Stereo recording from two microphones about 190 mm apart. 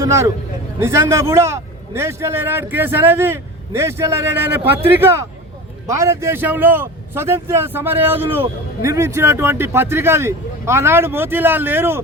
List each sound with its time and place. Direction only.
0.0 s a man's voice: 15° right (ahead or behind)